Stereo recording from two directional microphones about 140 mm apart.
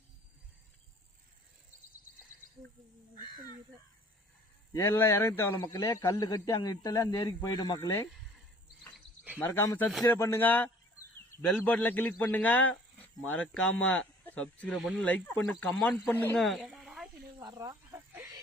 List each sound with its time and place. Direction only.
4.7 s a man's voice: 15° left (ahead or behind)
9.4 s a man's voice: 20° left (ahead or behind)
16.4 s a sound: centre (ahead or behind)
17.4 s chicken: 25° right (ahead or behind)